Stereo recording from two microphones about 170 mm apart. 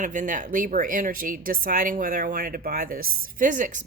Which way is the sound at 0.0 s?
50° right (ahead or behind).